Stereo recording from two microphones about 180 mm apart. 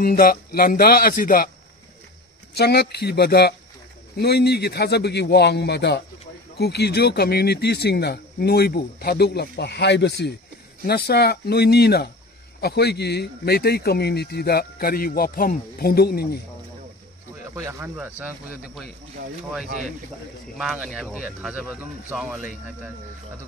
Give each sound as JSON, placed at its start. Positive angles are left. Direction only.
{"t": 0.0, "sound": "speech", "side_deg": 55}
{"t": 2.5, "sound": "a man's voice", "side_deg": 65}
{"t": 17.6, "sound": "speech", "side_deg": -15}
{"t": 20.5, "sound": "speech", "side_deg": -5}